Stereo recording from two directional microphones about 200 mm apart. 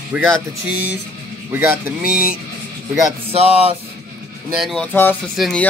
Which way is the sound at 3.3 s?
30° right (ahead or behind).